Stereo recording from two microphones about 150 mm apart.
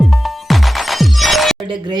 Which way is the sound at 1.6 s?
35° right (ahead or behind).